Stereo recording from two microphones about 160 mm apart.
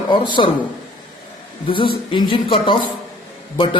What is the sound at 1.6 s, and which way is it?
A man's voice, 30° left (ahead or behind).